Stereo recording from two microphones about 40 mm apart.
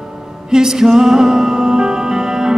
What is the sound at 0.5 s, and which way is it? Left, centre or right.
Music, centre.